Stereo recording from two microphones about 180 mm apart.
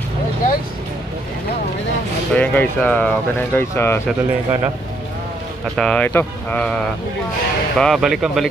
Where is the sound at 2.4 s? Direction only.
10° left (ahead or behind).